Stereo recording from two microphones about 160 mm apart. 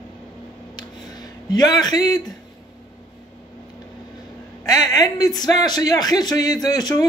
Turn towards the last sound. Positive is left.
turn(degrees=25)  # may be behind; listen again after turning